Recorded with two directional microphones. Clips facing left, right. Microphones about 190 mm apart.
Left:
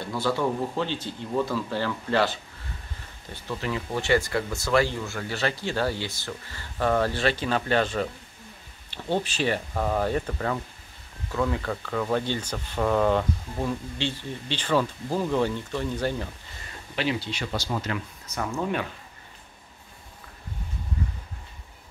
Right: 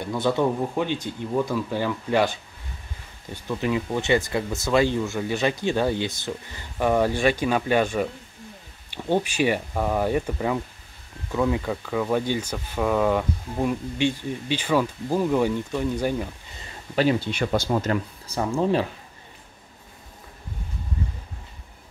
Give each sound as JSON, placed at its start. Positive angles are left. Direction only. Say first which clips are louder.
{"t": 0.0, "sound": "speech", "louder": "right 3 dB", "side_deg": -20}
{"t": 3.4, "sound": "speech", "louder": "right 5 dB", "side_deg": -15}
{"t": 16.9, "sound": "speech", "louder": "right 7 dB", "side_deg": -45}
{"t": 18.2, "sound": "speech", "louder": "right 4 dB", "side_deg": -30}